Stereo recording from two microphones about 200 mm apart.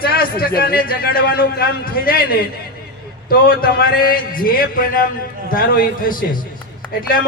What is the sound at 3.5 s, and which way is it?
A man's voice, 50° left (ahead or behind).